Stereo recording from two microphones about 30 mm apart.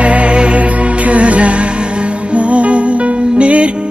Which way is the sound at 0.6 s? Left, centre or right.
Right.